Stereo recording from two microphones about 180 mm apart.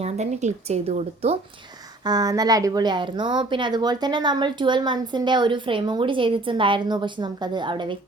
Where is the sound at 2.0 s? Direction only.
20° right (ahead or behind).